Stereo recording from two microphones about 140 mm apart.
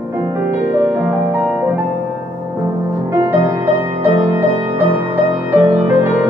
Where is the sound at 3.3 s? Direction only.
15° right (ahead or behind).